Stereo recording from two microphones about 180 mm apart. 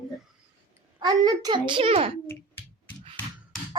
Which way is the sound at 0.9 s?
20° right (ahead or behind).